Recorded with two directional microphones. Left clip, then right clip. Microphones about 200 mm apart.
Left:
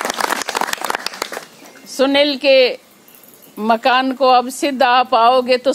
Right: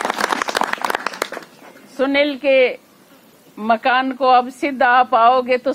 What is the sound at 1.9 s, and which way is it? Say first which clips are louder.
A woman's voice: left 3 dB; 20° left (ahead or behind).